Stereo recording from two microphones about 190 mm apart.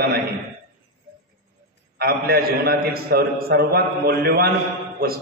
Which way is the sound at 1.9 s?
55° right (ahead or behind).